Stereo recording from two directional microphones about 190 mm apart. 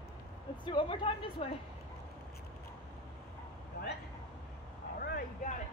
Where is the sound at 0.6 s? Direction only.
25° left (ahead or behind).